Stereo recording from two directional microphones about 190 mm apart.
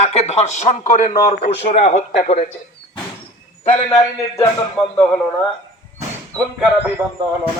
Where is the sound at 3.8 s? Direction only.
20° left (ahead or behind).